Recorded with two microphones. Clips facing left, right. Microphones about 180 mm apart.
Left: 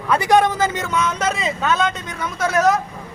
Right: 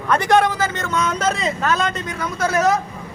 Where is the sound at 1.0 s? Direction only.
Centre (ahead or behind).